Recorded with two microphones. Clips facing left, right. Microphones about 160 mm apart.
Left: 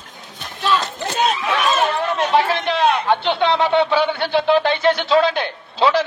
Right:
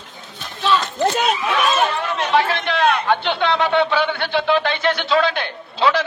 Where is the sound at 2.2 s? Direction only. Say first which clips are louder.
Even; 35° left (ahead or behind).